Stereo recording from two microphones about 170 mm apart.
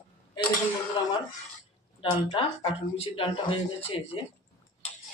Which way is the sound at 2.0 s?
30° left (ahead or behind).